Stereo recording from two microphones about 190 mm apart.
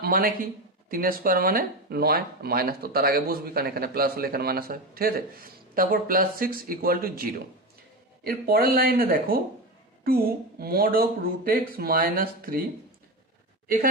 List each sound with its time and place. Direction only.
0.0 s speech: 50° right (ahead or behind)
10.6 s speech: 55° right (ahead or behind)
13.7 s speech: 50° right (ahead or behind)